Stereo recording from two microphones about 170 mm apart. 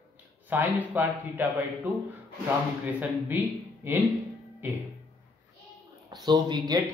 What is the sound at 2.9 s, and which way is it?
A man's voice, 10° right (ahead or behind).